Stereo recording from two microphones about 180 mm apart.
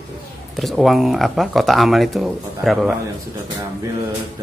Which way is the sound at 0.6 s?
Centre (ahead or behind).